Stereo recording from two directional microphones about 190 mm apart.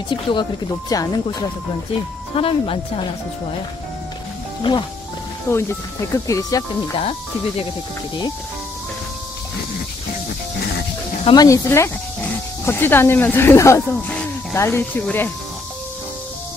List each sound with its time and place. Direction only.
0.1 s speech: 25° left (ahead or behind)
2.3 s speech: 30° left (ahead or behind)
5.5 s speech: 15° left (ahead or behind)
11.2 s speech: 20° left (ahead or behind)